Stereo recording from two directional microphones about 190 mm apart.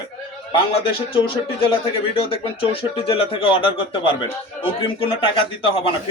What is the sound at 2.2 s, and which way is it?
Speech, 30° left (ahead or behind).